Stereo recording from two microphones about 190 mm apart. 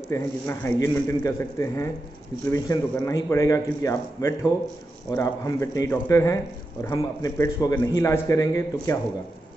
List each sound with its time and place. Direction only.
0.1 s a man's voice: 15° left (ahead or behind)